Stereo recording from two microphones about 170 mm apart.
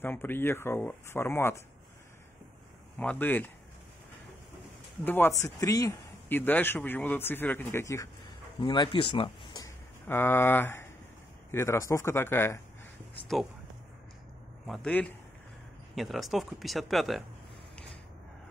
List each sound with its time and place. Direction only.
0.0 s speech: 10° left (ahead or behind)
3.0 s speech: 10° left (ahead or behind)
5.0 s speech: 10° left (ahead or behind)
10.0 s speech: 15° left (ahead or behind)
14.7 s speech: 5° left (ahead or behind)